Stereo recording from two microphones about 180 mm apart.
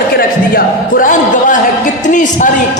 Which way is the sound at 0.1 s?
55° left (ahead or behind).